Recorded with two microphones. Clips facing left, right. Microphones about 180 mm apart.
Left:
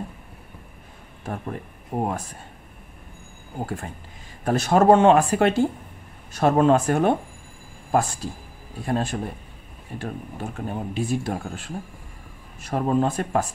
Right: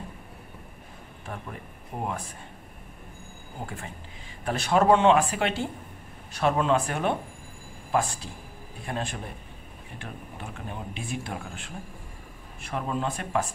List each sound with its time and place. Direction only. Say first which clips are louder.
1.2 s speech: left 8 dB; 45° left (ahead or behind)
3.6 s speech: left 6 dB; 40° left (ahead or behind)